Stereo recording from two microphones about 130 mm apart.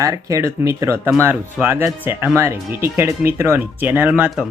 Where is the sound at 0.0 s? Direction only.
25° right (ahead or behind).